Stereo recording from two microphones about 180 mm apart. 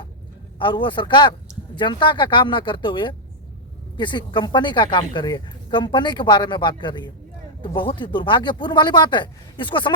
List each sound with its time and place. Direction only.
0.6 s speech: 25° left (ahead or behind)